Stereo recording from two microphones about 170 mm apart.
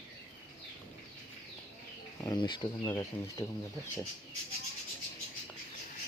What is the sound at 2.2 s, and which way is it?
Speech, 25° left (ahead or behind).